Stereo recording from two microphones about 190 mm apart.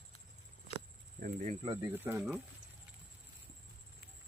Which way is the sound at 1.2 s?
45° right (ahead or behind).